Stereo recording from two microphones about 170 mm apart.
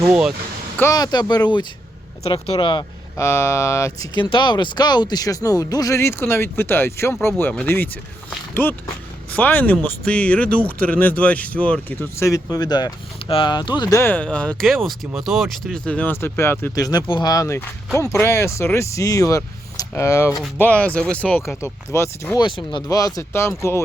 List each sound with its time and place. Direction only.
0.8 s speech: 20° left (ahead or behind)
3.2 s speech: 15° left (ahead or behind)
22.4 s speech: 30° left (ahead or behind)